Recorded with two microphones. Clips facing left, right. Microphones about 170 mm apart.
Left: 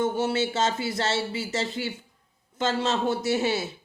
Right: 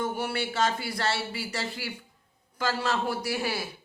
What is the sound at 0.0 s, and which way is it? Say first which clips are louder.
Speech: left 5 dB; 25° left (ahead or behind).